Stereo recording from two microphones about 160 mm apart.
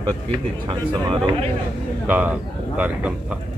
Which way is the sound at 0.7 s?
30° right (ahead or behind).